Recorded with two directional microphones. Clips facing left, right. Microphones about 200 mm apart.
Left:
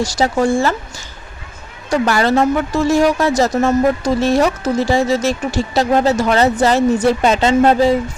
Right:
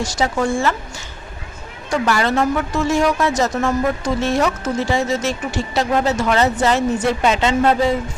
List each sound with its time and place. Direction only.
0.0 s a woman's voice: 35° left (ahead or behind)